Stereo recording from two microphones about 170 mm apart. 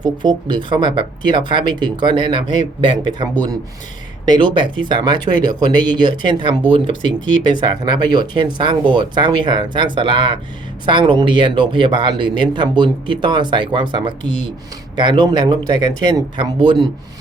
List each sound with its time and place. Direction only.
0.0 s speech: 25° right (ahead or behind)